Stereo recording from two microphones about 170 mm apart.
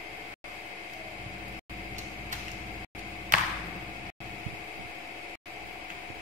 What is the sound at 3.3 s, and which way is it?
Clapping, 50° right (ahead or behind).